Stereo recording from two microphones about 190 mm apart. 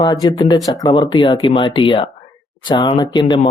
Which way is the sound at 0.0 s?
25° left (ahead or behind).